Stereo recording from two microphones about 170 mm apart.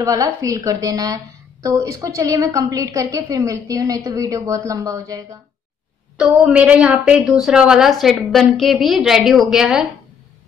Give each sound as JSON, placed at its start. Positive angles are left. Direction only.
{"t": 0.0, "sound": "a woman's voice", "side_deg": -20}
{"t": 6.1, "sound": "a woman's voice", "side_deg": -5}